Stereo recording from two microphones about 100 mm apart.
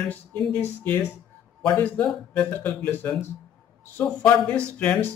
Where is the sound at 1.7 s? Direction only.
15° left (ahead or behind).